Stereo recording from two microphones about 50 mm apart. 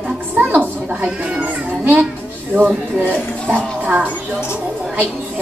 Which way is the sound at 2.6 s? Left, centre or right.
Right.